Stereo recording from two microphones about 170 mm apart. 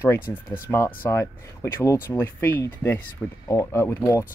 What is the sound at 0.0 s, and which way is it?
Speech, 15° left (ahead or behind).